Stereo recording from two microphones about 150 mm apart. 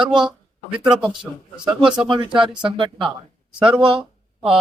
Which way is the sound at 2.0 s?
35° right (ahead or behind).